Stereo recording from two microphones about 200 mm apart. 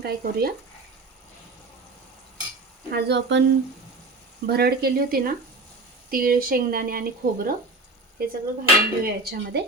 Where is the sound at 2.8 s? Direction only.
55° right (ahead or behind).